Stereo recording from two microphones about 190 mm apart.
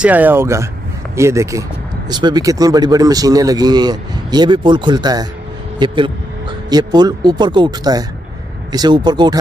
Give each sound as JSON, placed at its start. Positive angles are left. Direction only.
{"t": 0.0, "sound": "speech", "side_deg": -10}